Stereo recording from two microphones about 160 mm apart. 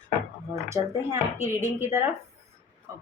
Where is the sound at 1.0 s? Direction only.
45° left (ahead or behind).